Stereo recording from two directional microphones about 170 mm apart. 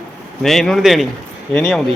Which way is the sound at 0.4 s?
Centre (ahead or behind).